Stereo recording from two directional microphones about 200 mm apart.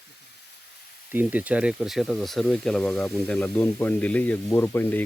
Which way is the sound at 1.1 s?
10° right (ahead or behind).